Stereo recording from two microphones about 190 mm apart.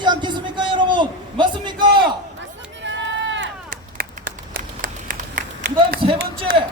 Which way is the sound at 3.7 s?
50° right (ahead or behind).